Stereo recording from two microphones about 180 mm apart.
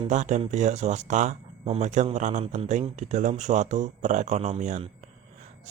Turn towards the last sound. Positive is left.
turn(degrees=-40)  # may be behind; listen again after turning